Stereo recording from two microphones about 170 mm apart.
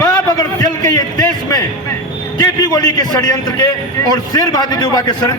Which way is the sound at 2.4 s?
20° left (ahead or behind).